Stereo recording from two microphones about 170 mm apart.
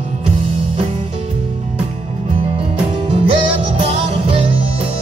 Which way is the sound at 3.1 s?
30° right (ahead or behind).